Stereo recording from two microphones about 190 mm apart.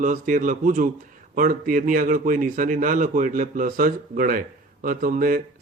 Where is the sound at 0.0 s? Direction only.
40° right (ahead or behind).